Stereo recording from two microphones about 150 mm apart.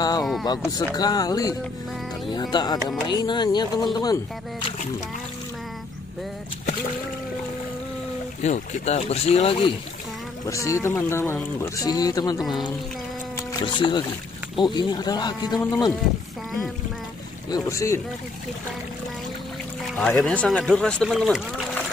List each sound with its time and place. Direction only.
0.2 s speech: centre (ahead or behind)
0.9 s speech: 25° left (ahead or behind)
8.4 s speech: 50° left (ahead or behind)
10.4 s speech: 20° left (ahead or behind)
12.4 s speech: centre (ahead or behind)
13.5 s speech: 30° left (ahead or behind)
17.5 s speech: 20° left (ahead or behind)
20.0 s speech: 5° left (ahead or behind)